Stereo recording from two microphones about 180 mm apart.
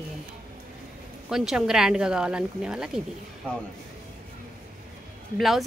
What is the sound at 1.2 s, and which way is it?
Speech, 5° right (ahead or behind).